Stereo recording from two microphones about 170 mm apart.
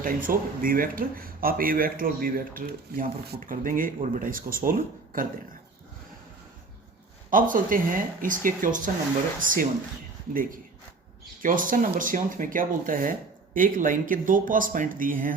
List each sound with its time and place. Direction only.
0.0 s speech: 55° right (ahead or behind)
7.3 s speech: 55° right (ahead or behind)
11.4 s speech: 50° right (ahead or behind)